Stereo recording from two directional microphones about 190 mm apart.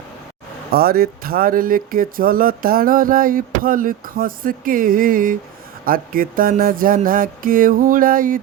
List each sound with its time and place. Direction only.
0.7 s speech: 55° right (ahead or behind)